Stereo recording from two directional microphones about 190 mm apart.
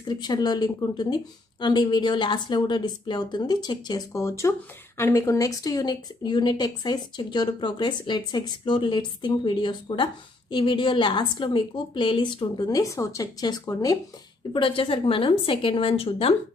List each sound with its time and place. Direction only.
0.1 s a woman's voice: 20° left (ahead or behind)